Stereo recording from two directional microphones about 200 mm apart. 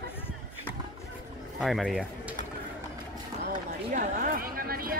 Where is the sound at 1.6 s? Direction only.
Centre (ahead or behind).